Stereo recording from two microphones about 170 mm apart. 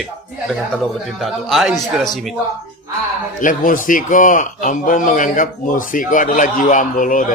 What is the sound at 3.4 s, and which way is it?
A man's voice, 50° left (ahead or behind).